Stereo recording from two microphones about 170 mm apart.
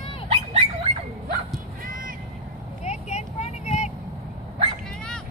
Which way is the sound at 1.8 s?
55° right (ahead or behind).